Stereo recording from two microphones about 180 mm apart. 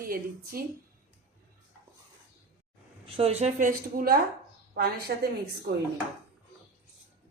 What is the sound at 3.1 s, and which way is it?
A woman's voice, 35° right (ahead or behind).